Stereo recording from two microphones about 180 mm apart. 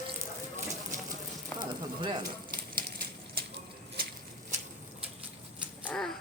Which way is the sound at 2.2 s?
55° right (ahead or behind).